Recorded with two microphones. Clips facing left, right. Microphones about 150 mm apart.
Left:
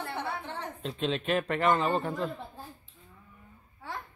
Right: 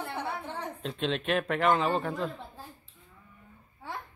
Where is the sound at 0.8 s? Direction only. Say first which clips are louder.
Left 1 dB; centre (ahead or behind).